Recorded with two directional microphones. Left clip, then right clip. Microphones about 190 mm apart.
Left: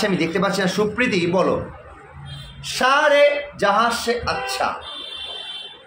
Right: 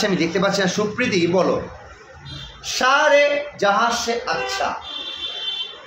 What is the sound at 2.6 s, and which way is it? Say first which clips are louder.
A man's voice: even; 5° left (ahead or behind).